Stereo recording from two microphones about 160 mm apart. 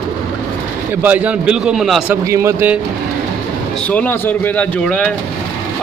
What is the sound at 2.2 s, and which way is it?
Speech, 20° right (ahead or behind).